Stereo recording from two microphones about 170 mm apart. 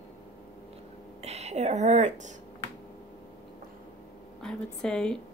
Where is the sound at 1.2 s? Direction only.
40° right (ahead or behind).